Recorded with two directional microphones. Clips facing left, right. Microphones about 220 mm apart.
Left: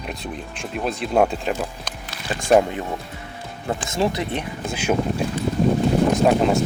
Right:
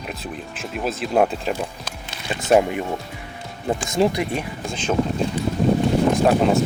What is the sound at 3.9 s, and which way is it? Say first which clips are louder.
Speech: right 3 dB; 15° right (ahead or behind).